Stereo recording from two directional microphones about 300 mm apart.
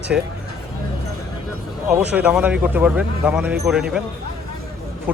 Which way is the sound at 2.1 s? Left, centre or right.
Centre.